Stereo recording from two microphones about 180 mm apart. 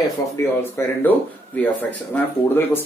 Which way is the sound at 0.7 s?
10° left (ahead or behind).